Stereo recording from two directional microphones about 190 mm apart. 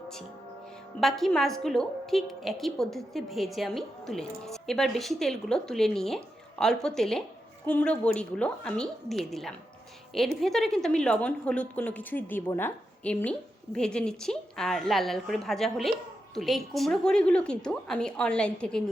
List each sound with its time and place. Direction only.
0.9 s a woman's voice: centre (ahead or behind)